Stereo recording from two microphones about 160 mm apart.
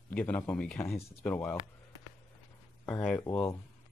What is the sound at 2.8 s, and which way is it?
Speech, 10° left (ahead or behind).